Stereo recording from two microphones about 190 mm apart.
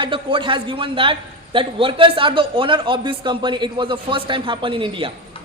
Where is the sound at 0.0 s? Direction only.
25° right (ahead or behind).